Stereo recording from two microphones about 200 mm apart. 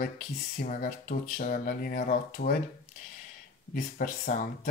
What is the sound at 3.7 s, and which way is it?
Speech, 45° left (ahead or behind).